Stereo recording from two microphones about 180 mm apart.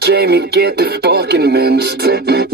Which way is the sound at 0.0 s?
65° right (ahead or behind).